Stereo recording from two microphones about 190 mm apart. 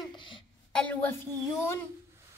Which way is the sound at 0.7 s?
10° left (ahead or behind).